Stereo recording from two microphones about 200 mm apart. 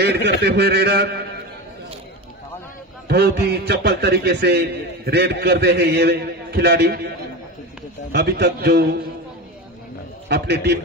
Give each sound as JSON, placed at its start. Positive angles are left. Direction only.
{"t": 0.0, "sound": "a man's voice", "side_deg": -55}
{"t": 3.1, "sound": "a man's voice", "side_deg": -55}
{"t": 8.1, "sound": "a man's voice", "side_deg": -55}
{"t": 10.2, "sound": "a man's voice", "side_deg": -55}